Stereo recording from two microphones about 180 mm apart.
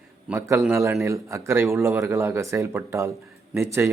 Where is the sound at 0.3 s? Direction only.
15° right (ahead or behind).